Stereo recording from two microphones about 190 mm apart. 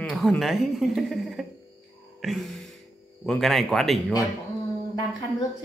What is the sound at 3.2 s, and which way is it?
Speech, centre (ahead or behind).